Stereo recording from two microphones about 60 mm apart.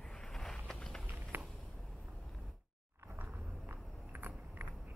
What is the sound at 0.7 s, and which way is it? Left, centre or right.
Run, centre.